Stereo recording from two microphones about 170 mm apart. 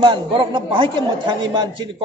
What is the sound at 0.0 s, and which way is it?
A man's voice, 25° right (ahead or behind).